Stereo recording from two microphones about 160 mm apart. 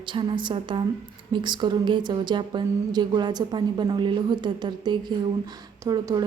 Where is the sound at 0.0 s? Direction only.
30° right (ahead or behind).